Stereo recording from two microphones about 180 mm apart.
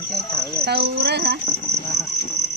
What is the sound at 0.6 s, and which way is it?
Cricket, 65° right (ahead or behind).